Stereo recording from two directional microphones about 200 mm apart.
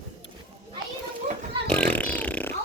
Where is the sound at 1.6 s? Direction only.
5° left (ahead or behind).